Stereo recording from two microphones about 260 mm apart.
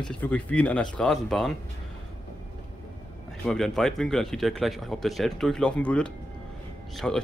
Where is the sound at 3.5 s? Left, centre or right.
Centre.